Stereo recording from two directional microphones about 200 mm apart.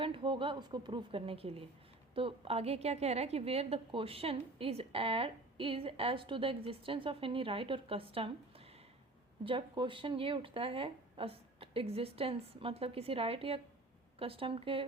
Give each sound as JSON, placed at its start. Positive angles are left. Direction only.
{"t": 0.0, "sound": "a woman's voice", "side_deg": -25}